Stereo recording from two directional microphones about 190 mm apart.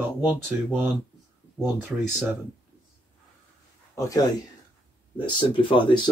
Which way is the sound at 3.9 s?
20° left (ahead or behind).